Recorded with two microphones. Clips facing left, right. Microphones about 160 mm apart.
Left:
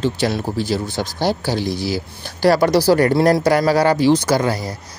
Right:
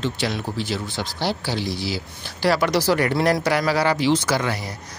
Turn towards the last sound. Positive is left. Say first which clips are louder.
# left 5 dB
turn(degrees=40)  # may be behind; listen again after turning